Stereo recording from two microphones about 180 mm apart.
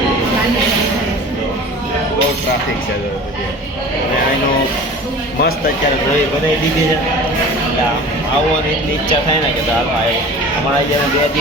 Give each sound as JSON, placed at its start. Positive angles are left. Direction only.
{"t": 5.4, "sound": "speech", "side_deg": 55}